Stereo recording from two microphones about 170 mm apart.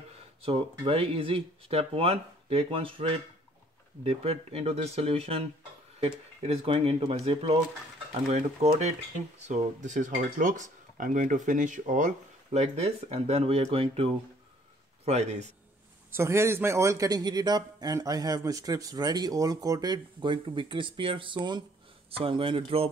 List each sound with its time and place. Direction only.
0.4 s speech: 30° right (ahead or behind); by 12.1 s 50° right (ahead or behind)
12.4 s speech: 40° right (ahead or behind)
16.1 s a man's voice: 15° right (ahead or behind); by 22.8 s 30° right (ahead or behind)